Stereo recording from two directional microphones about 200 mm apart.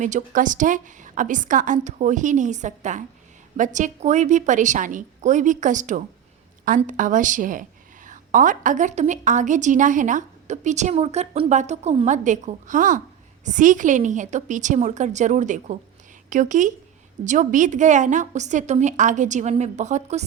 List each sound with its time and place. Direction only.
0.0 s a woman's voice: 40° right (ahead or behind)